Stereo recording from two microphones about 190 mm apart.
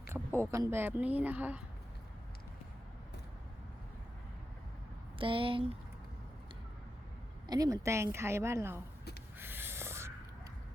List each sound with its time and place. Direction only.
0.1 s a sound: 15° right (ahead or behind)
0.5 s a woman's voice: 15° right (ahead or behind)
5.1 s speech: 30° right (ahead or behind)
7.4 s a woman's voice: 20° right (ahead or behind)
9.4 s snort: 10° right (ahead or behind)